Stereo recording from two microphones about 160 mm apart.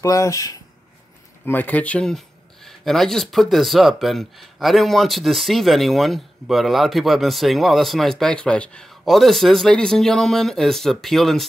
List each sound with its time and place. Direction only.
0.0 s speech: 20° left (ahead or behind); by 11.4 s centre (ahead or behind)